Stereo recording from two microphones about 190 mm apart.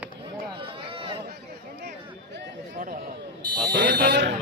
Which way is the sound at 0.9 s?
30° right (ahead or behind).